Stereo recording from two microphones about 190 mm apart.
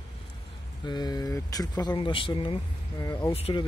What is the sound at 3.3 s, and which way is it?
Speech, 30° left (ahead or behind).